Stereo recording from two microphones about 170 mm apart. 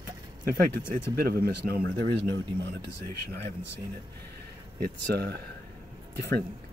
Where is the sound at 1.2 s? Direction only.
65° right (ahead or behind).